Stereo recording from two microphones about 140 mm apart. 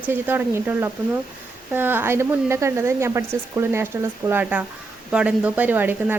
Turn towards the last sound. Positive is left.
turn(degrees=-10)  # may be behind; listen again after turning